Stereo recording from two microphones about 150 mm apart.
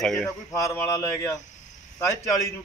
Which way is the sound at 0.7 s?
20° left (ahead or behind).